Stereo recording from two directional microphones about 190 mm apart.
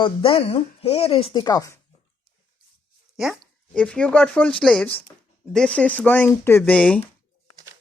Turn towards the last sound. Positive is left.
turn(degrees=5)  # may be behind; listen again after turning